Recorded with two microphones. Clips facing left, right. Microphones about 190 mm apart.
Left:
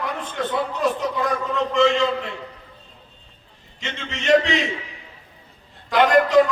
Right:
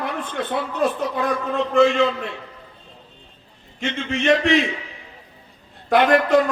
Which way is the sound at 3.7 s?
55° right (ahead or behind).